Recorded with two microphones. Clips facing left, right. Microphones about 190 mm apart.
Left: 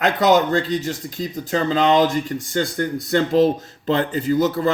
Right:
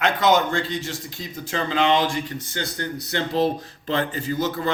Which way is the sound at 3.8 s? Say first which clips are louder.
Left 5 dB; 45° left (ahead or behind).